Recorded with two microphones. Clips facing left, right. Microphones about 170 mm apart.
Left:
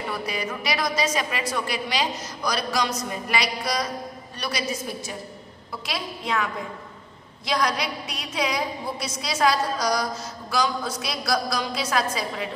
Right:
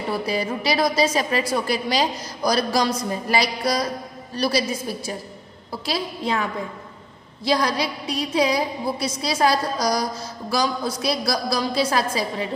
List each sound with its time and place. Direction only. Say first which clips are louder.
0.1 s a woman's voice: right 8 dB; 30° right (ahead or behind)